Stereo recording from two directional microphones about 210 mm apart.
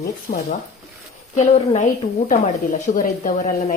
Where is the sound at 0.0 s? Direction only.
45° left (ahead or behind).